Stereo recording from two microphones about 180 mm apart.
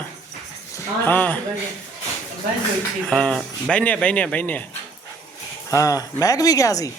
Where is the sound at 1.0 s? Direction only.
10° left (ahead or behind).